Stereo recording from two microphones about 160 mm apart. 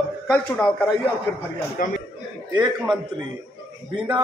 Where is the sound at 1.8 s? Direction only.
60° left (ahead or behind).